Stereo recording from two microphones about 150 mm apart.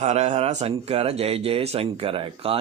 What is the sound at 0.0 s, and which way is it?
Speech, 45° right (ahead or behind).